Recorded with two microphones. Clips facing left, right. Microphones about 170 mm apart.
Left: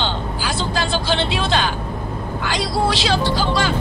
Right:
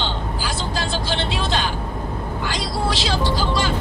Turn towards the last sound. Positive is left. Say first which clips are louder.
# left 2 dB
turn(degrees=65)  # may be behind; listen again after turning